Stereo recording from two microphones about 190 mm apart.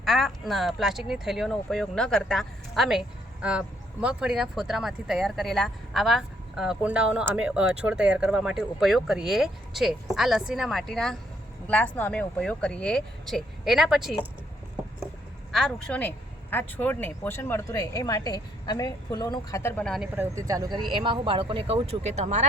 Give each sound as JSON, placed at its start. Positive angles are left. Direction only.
{"t": 0.0, "sound": "speech", "side_deg": 0}
{"t": 4.0, "sound": "speech", "side_deg": -5}
{"t": 15.5, "sound": "a woman's voice", "side_deg": 5}
{"t": 19.8, "sound": "speech", "side_deg": 0}
{"t": 20.1, "sound": "speech", "side_deg": -15}